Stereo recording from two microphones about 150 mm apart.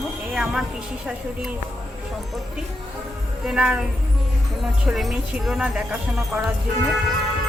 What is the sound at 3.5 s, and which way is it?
Speech, 5° right (ahead or behind).